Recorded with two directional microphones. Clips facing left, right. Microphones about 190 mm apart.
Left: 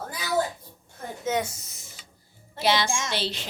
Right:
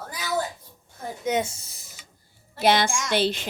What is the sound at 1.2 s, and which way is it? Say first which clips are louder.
Speech: right 2 dB; 25° right (ahead or behind).